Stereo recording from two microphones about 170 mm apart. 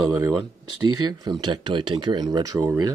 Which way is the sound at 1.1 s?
25° right (ahead or behind).